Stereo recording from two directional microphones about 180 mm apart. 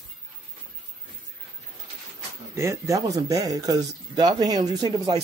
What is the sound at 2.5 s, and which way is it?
Speech, 15° right (ahead or behind).